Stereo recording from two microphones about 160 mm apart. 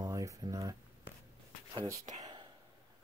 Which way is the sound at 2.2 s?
30° right (ahead or behind).